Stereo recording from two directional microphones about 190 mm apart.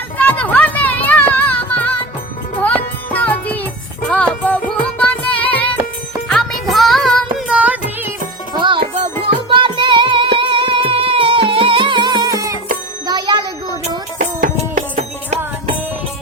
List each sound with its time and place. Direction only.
0.2 s music: 10° left (ahead or behind); by 8.1 s 5° right (ahead or behind)
8.5 s music: 25° right (ahead or behind)
13.8 s music: 45° right (ahead or behind)